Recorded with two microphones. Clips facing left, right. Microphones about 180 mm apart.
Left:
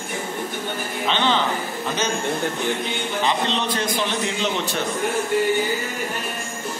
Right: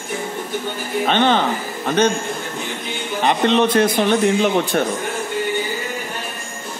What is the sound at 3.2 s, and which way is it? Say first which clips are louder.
A man's voice: right 8 dB; 55° right (ahead or behind).